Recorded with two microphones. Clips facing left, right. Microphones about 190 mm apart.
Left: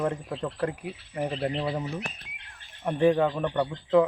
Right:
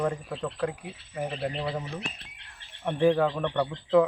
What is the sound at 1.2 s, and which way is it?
Speech, 25° left (ahead or behind).